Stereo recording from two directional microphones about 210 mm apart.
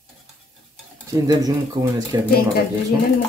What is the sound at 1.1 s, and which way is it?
Stir, 15° right (ahead or behind).